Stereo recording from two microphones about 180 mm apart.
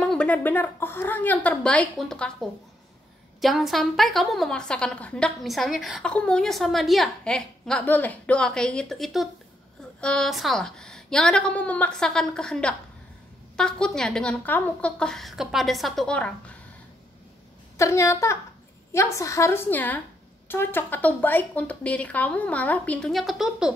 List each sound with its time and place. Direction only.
0.0 s a woman's voice: 5° left (ahead or behind)
17.7 s speech: 15° left (ahead or behind); by 23.7 s centre (ahead or behind)